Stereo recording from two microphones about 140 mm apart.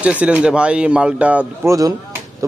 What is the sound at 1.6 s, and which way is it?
Speech, 25° right (ahead or behind).